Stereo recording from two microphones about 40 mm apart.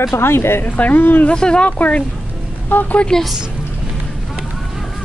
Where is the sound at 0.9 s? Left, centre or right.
Left.